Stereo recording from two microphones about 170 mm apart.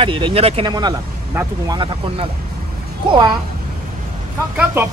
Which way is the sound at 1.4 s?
20° right (ahead or behind).